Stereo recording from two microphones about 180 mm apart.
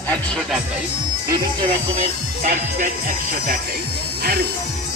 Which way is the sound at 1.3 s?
25° right (ahead or behind).